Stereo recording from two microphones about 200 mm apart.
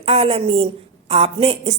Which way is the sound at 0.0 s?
30° right (ahead or behind).